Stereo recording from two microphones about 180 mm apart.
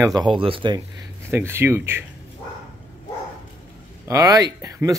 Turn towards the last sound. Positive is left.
turn(degrees=-15)  # may be behind; listen again after turning